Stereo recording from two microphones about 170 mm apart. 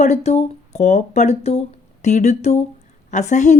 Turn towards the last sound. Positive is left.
turn(degrees=45)  # may be behind; listen again after turning